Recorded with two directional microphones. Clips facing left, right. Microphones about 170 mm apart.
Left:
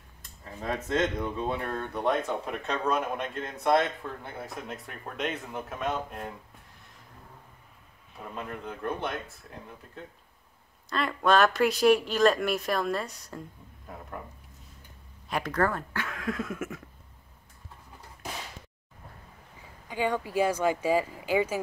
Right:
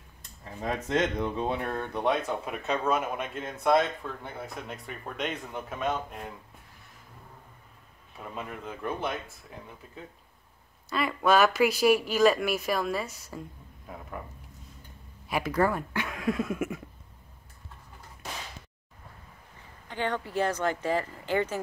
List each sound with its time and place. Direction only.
0.6 s speech: 15° right (ahead or behind)
8.4 s speech: 5° right (ahead or behind)
10.9 s speech: 5° right (ahead or behind)
15.2 s speech: 10° right (ahead or behind)
19.9 s speech: 10° left (ahead or behind)